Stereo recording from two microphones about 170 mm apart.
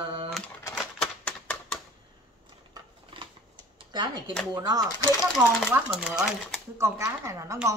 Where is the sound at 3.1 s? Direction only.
30° right (ahead or behind).